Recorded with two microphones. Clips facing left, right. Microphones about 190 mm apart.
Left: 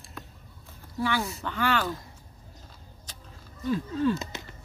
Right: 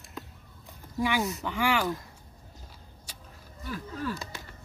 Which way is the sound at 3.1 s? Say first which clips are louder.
Even; 10° right (ahead or behind).